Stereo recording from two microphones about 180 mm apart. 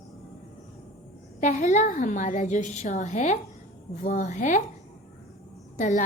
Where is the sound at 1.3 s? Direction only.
40° left (ahead or behind).